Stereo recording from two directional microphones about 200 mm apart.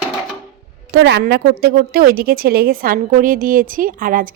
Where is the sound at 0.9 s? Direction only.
60° right (ahead or behind); by 4.3 s 45° right (ahead or behind).